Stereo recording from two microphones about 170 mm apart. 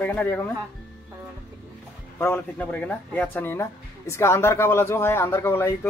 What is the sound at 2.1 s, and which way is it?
Speech, 15° left (ahead or behind).